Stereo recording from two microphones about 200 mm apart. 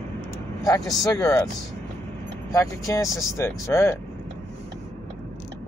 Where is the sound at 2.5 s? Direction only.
15° left (ahead or behind).